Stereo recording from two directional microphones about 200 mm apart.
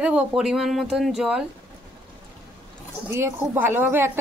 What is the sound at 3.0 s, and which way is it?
Speech, 10° right (ahead or behind).